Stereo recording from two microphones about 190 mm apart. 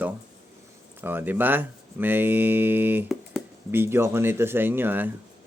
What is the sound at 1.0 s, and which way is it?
Speech, 10° right (ahead or behind).